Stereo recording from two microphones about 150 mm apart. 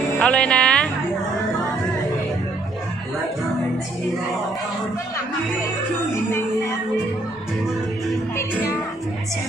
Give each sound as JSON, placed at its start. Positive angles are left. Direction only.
{"t": 0.2, "sound": "speech", "side_deg": 5}
{"t": 8.4, "sound": "music", "side_deg": 20}